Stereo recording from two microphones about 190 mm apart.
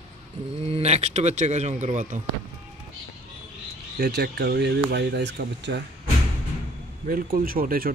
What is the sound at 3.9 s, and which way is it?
Speech, 55° right (ahead or behind).